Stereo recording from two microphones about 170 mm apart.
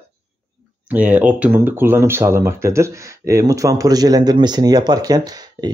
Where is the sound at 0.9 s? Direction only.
10° right (ahead or behind).